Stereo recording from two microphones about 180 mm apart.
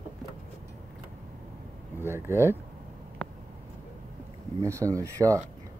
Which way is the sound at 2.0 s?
15° right (ahead or behind).